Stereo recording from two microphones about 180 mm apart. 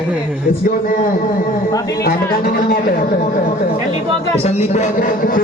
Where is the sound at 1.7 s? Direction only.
20° left (ahead or behind).